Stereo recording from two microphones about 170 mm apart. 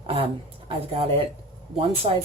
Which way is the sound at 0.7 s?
30° right (ahead or behind).